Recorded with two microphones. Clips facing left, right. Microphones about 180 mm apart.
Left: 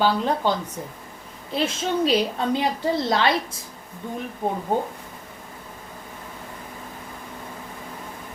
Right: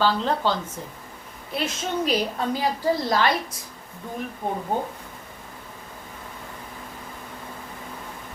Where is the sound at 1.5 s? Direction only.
30° left (ahead or behind).